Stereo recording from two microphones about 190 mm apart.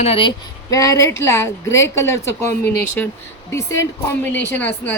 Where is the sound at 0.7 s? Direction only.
15° left (ahead or behind).